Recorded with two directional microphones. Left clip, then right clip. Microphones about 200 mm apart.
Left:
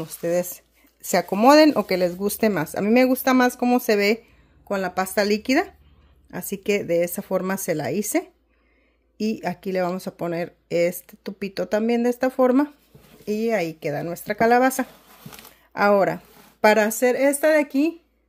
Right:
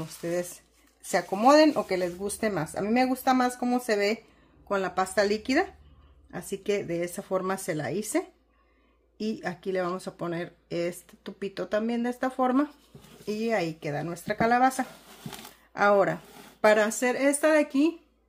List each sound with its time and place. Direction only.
0.0 s speech: 45° left (ahead or behind)
4.6 s speech: 35° left (ahead or behind)